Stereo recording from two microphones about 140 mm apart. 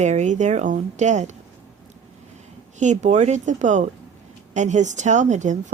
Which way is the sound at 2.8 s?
60° right (ahead or behind).